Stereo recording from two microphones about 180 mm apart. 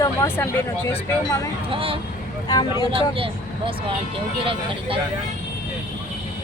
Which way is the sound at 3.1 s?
30° right (ahead or behind).